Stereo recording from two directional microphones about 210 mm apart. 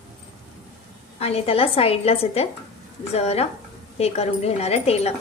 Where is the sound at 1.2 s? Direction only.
30° left (ahead or behind).